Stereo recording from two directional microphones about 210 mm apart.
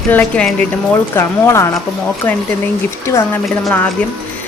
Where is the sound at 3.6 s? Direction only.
5° left (ahead or behind).